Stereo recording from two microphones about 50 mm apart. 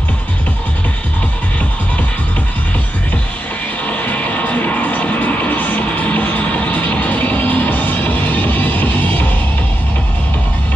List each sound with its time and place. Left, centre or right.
3.8 s music: left